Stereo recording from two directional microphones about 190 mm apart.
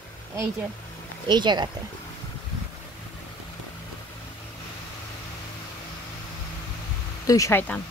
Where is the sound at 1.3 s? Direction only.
25° right (ahead or behind).